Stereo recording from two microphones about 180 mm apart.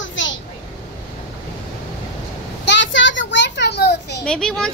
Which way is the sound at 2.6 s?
90° left.